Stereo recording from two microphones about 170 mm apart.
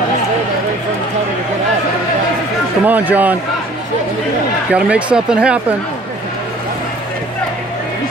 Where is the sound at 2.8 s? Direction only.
10° right (ahead or behind).